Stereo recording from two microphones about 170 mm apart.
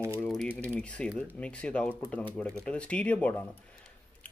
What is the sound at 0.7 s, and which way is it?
Speech, 5° left (ahead or behind).